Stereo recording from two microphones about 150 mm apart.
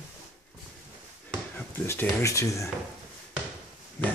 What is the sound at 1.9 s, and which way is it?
Speech, 15° left (ahead or behind).